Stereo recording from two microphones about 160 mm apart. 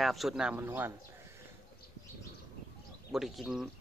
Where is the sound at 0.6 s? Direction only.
15° right (ahead or behind).